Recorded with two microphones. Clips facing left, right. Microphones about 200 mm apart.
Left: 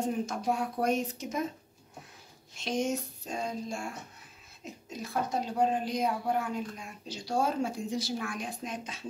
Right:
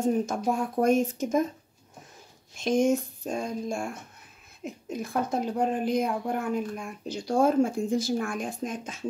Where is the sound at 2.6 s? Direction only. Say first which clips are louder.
Right 8 dB; 50° right (ahead or behind).